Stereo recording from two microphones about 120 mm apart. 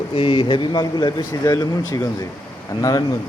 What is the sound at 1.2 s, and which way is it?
Speech, 25° left (ahead or behind).